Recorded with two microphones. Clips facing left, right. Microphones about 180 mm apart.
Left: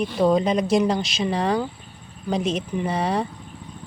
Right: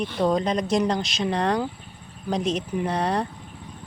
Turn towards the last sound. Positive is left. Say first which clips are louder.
# left 1 dB
turn(degrees=5)  # may be behind; listen again after turning